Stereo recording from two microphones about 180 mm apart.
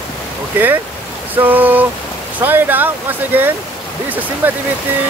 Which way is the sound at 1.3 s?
10° right (ahead or behind).